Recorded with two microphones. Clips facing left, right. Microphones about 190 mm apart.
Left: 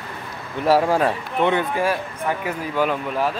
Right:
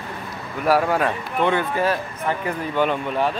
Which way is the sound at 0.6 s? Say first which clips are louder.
Left 2 dB; 25° left (ahead or behind).